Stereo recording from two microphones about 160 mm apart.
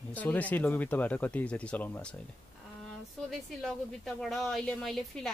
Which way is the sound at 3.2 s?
5° left (ahead or behind).